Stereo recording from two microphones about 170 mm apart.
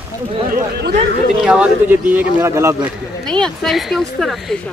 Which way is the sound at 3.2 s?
5° left (ahead or behind).